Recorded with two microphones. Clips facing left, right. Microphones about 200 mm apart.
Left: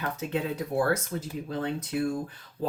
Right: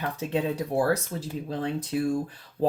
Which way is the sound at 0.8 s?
35° right (ahead or behind).